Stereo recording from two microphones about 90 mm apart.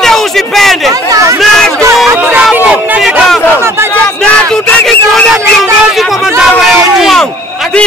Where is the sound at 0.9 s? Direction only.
40° right (ahead or behind).